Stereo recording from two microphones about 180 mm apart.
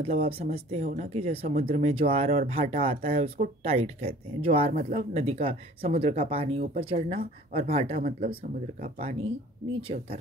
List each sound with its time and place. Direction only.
0.0 s speech: 35° right (ahead or behind)